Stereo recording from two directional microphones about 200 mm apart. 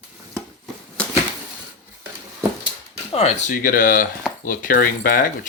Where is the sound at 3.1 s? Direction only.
30° left (ahead or behind).